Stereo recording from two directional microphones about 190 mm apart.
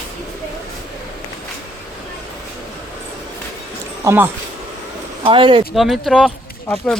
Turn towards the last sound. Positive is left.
turn(degrees=5)  # may be behind; listen again after turning